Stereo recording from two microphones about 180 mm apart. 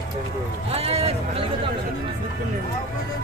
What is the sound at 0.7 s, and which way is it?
Speech, 35° right (ahead or behind).